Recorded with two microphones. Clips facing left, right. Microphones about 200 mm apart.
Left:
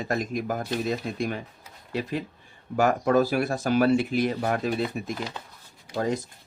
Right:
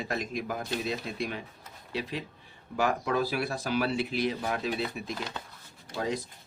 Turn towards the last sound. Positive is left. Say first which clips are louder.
# left 5 dB
turn(degrees=45)  # may be behind; listen again after turning